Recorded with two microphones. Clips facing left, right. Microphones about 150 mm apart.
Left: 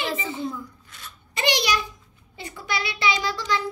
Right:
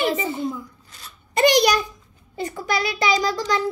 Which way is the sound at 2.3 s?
45° right (ahead or behind).